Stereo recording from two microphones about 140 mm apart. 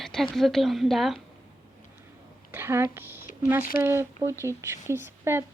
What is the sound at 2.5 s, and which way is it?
Speech, 15° right (ahead or behind).